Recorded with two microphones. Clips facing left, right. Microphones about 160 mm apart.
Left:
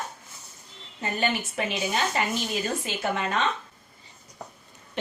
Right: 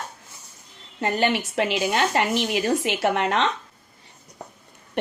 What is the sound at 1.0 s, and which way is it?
A woman's voice, 75° right (ahead or behind).